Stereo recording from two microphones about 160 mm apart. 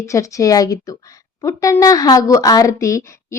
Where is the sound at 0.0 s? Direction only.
20° left (ahead or behind).